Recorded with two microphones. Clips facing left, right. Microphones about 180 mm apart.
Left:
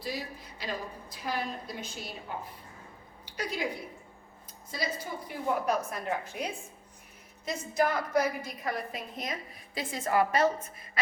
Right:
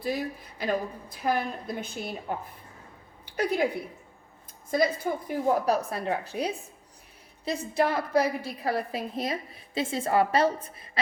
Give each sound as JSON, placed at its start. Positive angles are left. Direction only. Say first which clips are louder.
{"t": 0.0, "sound": "a woman's voice", "louder": "right 7 dB", "side_deg": -55}
{"t": 3.2, "sound": "a woman's voice", "louder": "right 8 dB", "side_deg": -55}
{"t": 4.7, "sound": "a woman's voice", "louder": "right 10 dB", "side_deg": -50}
{"t": 5.5, "sound": "a woman's voice", "louder": "right 4 dB", "side_deg": -35}